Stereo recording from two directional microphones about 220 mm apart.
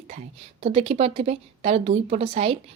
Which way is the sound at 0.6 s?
25° right (ahead or behind).